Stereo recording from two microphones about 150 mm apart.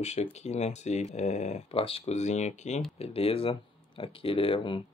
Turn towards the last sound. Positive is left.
turn(degrees=35)  # may be behind; listen again after turning